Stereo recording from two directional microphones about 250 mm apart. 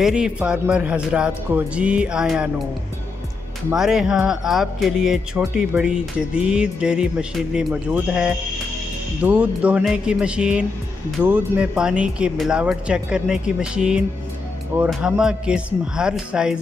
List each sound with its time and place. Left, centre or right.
0.0 s speech: centre
3.7 s speech: centre